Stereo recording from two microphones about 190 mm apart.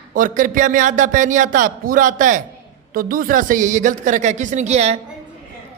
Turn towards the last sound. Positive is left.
turn(degrees=-35)  # may be behind; listen again after turning